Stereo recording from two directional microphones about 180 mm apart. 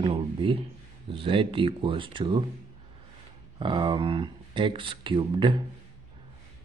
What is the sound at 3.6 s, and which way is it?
Speech, 25° right (ahead or behind).